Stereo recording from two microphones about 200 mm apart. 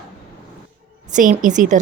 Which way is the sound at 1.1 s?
40° right (ahead or behind).